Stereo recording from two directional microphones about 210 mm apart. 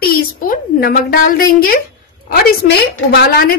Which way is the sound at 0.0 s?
45° left (ahead or behind).